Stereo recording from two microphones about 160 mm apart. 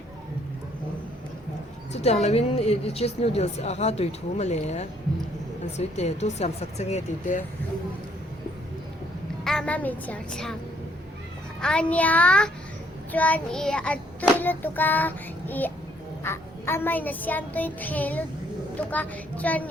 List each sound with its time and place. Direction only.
1.9 s a woman's voice: 40° left (ahead or behind)
9.4 s a child's voice: 5° left (ahead or behind)
11.6 s child singing: 5° left (ahead or behind)